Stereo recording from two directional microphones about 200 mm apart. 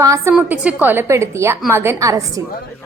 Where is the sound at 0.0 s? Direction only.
15° right (ahead or behind).